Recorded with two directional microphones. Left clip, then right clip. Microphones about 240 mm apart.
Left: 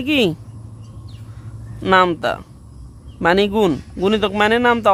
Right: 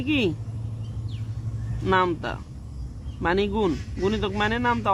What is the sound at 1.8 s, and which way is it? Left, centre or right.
Speech, left.